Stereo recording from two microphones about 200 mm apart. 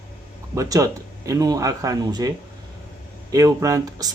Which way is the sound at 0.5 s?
15° right (ahead or behind).